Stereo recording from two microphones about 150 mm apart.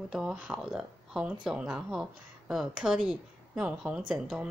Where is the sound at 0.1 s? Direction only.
5° right (ahead or behind).